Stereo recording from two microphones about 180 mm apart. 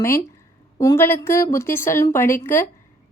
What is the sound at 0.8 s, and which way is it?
A woman's voice, 15° left (ahead or behind).